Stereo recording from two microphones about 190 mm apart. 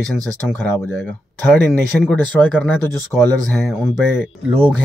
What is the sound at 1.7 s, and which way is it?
Speech, 10° left (ahead or behind).